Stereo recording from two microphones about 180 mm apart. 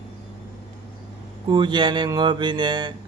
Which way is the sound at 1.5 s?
25° right (ahead or behind).